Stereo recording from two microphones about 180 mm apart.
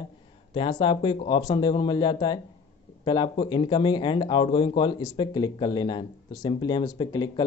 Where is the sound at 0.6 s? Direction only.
25° left (ahead or behind).